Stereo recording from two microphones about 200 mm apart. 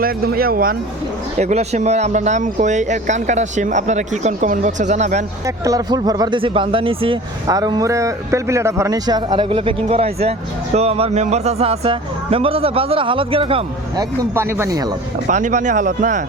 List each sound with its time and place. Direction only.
0.0 s speech: 50° right (ahead or behind)
1.4 s speech: 35° right (ahead or behind)
5.5 s speech: 15° right (ahead or behind)
15.3 s speech: 40° right (ahead or behind)